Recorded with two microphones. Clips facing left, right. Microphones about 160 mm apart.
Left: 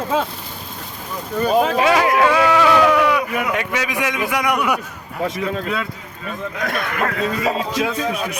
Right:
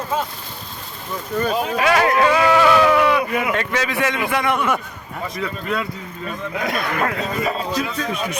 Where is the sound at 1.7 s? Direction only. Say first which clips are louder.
Left 2 dB; 25° left (ahead or behind).